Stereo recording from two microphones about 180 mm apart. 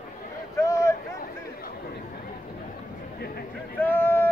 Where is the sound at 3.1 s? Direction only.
55° left (ahead or behind).